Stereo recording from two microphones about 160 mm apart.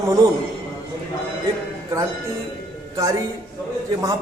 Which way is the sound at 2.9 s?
20° right (ahead or behind).